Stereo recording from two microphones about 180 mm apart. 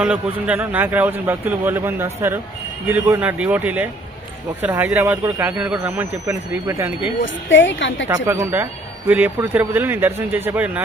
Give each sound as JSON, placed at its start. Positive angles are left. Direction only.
{"t": 0.0, "sound": "speech", "side_deg": -5}
{"t": 7.2, "sound": "a woman's voice", "side_deg": 90}
{"t": 8.0, "sound": "speech", "side_deg": -15}